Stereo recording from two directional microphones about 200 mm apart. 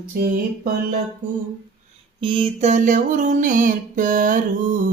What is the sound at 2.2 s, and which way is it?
Music, 25° right (ahead or behind).